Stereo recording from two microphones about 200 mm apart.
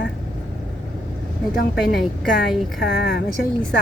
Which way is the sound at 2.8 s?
60° left (ahead or behind).